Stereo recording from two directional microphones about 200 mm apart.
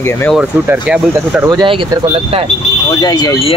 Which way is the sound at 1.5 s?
20° right (ahead or behind).